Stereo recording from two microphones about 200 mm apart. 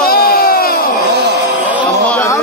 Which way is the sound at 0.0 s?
50° left (ahead or behind).